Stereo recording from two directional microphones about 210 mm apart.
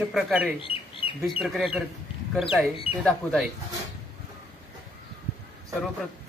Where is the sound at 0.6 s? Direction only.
25° left (ahead or behind).